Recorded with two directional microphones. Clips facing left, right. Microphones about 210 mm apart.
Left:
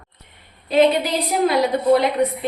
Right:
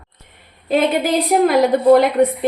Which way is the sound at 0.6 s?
50° right (ahead or behind).